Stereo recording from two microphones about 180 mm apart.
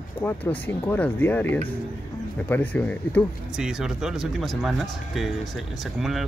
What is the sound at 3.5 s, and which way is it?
Speech, 5° right (ahead or behind).